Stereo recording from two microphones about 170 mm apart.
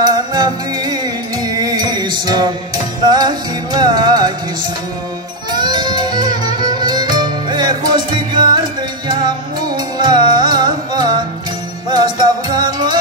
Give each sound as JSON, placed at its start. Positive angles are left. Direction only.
{"t": 0.0, "sound": "music", "side_deg": -25}
{"t": 5.5, "sound": "music", "side_deg": -25}
{"t": 9.9, "sound": "music", "side_deg": -25}